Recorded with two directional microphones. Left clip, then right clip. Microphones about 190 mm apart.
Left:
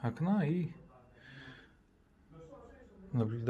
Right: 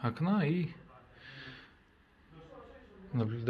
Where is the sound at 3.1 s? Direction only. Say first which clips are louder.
Right 1 dB; 25° left (ahead or behind).